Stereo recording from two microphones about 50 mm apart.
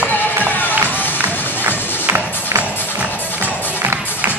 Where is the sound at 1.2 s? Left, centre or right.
Right.